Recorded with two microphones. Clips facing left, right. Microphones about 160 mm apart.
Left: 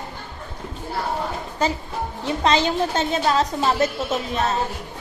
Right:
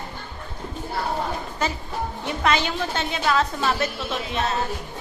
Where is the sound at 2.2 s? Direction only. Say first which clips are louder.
Left 4 dB; 30° left (ahead or behind).